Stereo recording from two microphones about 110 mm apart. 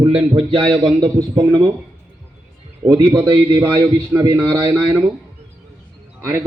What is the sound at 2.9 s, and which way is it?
A man's voice, 40° right (ahead or behind).